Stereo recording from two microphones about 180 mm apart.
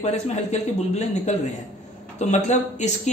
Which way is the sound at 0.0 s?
40° left (ahead or behind).